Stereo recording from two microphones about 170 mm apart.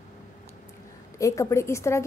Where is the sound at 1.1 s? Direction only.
20° left (ahead or behind).